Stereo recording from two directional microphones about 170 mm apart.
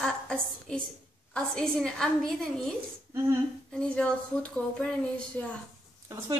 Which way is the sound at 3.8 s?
5° left (ahead or behind).